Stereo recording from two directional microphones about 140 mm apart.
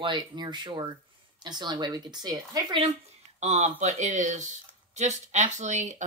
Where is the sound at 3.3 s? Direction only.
55° right (ahead or behind).